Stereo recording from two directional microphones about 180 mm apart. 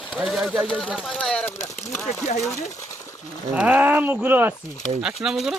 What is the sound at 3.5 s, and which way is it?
Speech, 10° right (ahead or behind).